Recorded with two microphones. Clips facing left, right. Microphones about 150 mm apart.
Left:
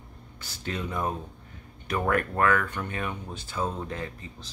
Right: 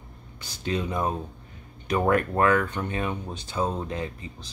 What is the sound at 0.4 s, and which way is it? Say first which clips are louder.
Speech: right 5 dB; 20° right (ahead or behind).